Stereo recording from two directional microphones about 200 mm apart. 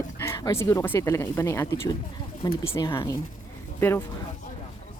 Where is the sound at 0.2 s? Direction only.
15° left (ahead or behind).